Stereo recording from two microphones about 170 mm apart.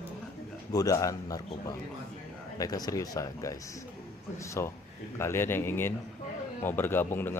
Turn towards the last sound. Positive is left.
turn(degrees=15)  # may be behind; listen again after turning